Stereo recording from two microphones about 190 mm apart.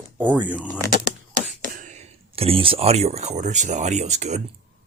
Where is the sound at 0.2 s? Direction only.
10° right (ahead or behind).